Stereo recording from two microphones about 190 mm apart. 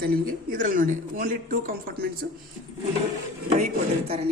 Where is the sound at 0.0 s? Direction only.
50° right (ahead or behind).